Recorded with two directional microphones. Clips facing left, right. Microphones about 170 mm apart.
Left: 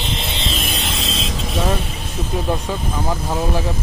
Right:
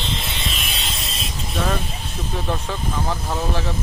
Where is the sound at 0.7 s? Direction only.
55° left (ahead or behind).